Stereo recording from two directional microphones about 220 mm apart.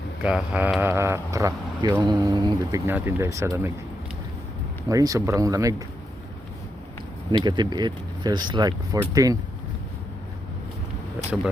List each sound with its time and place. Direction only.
0.2 s speech: 5° right (ahead or behind)
4.9 s speech: 15° right (ahead or behind)
7.3 s speech: 20° right (ahead or behind)
11.3 s speech: 5° left (ahead or behind)